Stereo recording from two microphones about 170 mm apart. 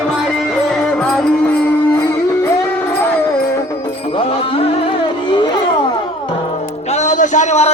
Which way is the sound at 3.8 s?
30° left (ahead or behind).